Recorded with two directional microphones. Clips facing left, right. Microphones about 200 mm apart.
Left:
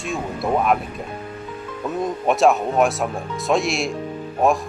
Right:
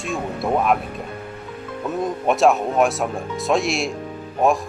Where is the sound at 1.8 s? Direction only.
Centre (ahead or behind).